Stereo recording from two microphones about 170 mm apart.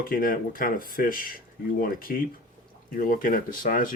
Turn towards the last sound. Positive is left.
turn(degrees=50)  # may be behind; listen again after turning